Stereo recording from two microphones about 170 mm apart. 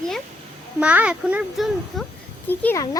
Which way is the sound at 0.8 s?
5° right (ahead or behind).